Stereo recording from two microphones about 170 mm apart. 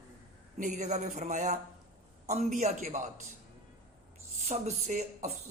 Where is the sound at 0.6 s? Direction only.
45° right (ahead or behind).